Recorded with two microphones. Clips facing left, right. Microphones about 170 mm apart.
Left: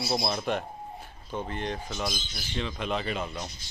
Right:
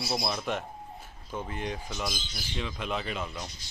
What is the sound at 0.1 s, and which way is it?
Speech, 25° left (ahead or behind).